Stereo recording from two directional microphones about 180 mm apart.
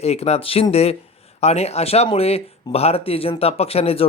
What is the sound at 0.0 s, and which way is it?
Speech, 35° left (ahead or behind).